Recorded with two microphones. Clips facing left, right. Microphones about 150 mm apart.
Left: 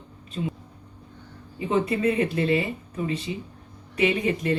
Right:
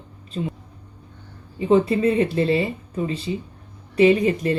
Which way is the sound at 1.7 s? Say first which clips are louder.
Right 6 dB; 30° right (ahead or behind).